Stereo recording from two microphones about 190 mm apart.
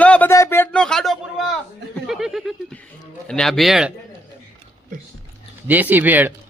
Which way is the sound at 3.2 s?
5° left (ahead or behind).